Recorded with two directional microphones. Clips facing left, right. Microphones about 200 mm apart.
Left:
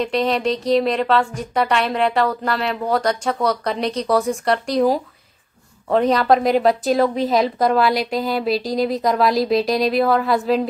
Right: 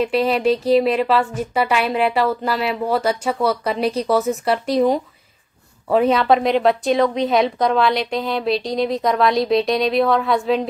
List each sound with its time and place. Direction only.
0.0 s a woman's voice: 5° right (ahead or behind)